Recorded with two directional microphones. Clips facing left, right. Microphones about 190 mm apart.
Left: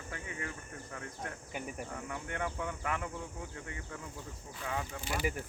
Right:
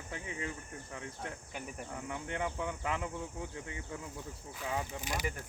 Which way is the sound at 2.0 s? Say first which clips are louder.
Right 2 dB; 20° right (ahead or behind).